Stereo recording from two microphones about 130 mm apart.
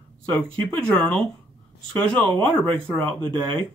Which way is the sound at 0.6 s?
10° left (ahead or behind).